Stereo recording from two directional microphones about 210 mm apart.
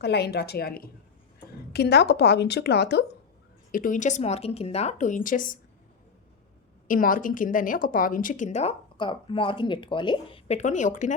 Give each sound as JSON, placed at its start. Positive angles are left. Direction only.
{"t": 0.0, "sound": "a woman's voice", "side_deg": 50}
{"t": 3.7, "sound": "a woman's voice", "side_deg": 40}
{"t": 6.8, "sound": "a woman's voice", "side_deg": 40}